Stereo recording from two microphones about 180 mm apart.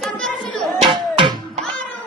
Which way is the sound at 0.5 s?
5° left (ahead or behind).